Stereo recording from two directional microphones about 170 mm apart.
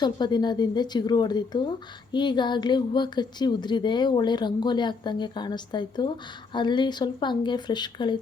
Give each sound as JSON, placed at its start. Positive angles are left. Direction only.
{"t": 0.0, "sound": "a woman's voice", "side_deg": 25}